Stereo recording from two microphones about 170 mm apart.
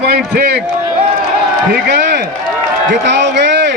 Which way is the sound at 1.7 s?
75° right (ahead or behind).